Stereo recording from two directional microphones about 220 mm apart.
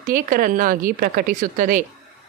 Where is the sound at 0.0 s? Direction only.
40° right (ahead or behind).